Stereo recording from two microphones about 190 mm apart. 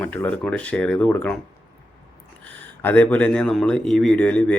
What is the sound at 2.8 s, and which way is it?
Speech, 10° left (ahead or behind).